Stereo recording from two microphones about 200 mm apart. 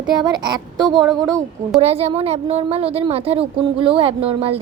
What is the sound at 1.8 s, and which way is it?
A woman's voice, 30° right (ahead or behind).